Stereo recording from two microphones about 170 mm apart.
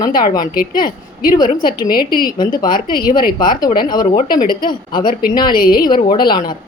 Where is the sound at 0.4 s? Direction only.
55° left (ahead or behind).